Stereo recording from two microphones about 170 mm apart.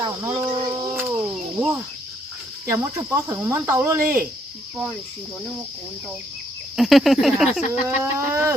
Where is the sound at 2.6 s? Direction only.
15° right (ahead or behind).